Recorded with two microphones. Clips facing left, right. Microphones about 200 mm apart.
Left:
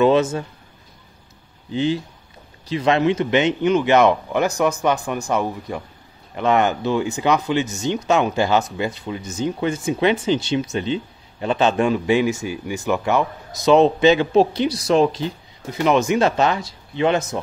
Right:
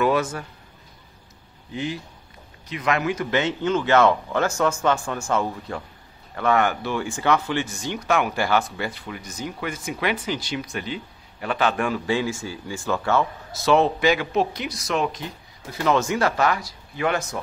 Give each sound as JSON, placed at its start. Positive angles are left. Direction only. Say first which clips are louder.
{"t": 0.0, "sound": "speech", "louder": "left 6 dB", "side_deg": 25}
{"t": 1.7, "sound": "speech", "louder": "left 8 dB", "side_deg": 30}